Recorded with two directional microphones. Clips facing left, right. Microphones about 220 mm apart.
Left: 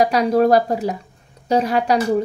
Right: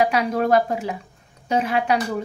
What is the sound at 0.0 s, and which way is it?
Speech, 35° left (ahead or behind).